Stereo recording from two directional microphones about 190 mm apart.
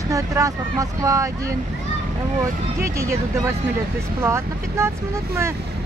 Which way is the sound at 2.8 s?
15° right (ahead or behind).